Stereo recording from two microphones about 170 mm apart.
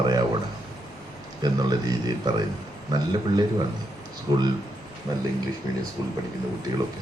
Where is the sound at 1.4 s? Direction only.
25° right (ahead or behind).